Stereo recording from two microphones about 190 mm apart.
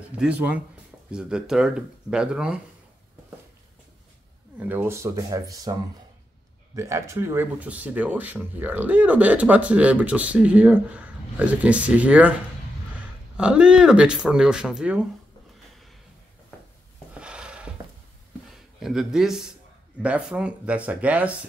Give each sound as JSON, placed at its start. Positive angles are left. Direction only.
{"t": 0.2, "sound": "speech", "side_deg": -5}
{"t": 4.6, "sound": "speech", "side_deg": -10}
{"t": 13.4, "sound": "speech", "side_deg": -5}
{"t": 17.1, "sound": "a sound", "side_deg": -5}
{"t": 18.8, "sound": "speech", "side_deg": 0}